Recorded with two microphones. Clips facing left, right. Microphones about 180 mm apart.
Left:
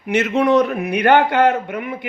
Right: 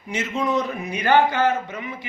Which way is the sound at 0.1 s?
65° left (ahead or behind).